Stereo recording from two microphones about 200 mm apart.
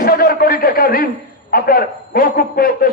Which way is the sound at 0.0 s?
45° left (ahead or behind).